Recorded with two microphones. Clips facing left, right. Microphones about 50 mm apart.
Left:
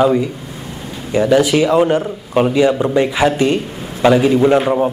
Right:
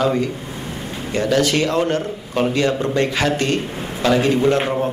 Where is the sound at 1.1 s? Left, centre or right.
Centre.